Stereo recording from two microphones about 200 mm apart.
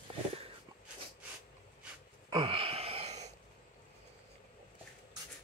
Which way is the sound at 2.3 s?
25° right (ahead or behind).